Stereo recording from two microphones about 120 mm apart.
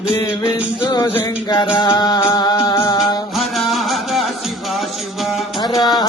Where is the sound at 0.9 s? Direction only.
40° left (ahead or behind).